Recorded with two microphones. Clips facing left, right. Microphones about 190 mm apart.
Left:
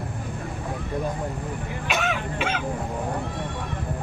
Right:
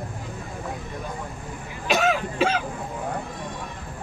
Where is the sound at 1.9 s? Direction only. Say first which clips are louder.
Right 5 dB; 35° right (ahead or behind).